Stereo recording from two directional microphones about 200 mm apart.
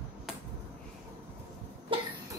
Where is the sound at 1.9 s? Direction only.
25° right (ahead or behind).